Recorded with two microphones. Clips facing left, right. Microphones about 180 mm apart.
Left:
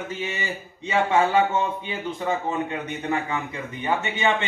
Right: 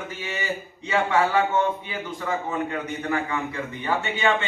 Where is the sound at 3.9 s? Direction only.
20° left (ahead or behind).